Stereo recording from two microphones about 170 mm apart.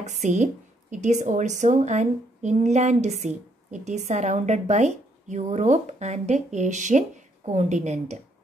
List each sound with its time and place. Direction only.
0.0 s speech: 45° right (ahead or behind)